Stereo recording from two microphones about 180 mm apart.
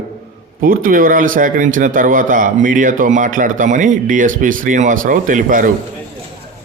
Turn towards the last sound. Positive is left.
turn(degrees=-45)  # may be behind; listen again after turning